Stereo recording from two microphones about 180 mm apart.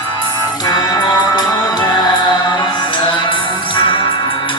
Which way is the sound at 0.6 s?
20° left (ahead or behind).